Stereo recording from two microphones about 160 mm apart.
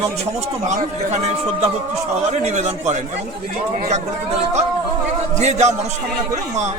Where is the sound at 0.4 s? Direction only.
45° right (ahead or behind).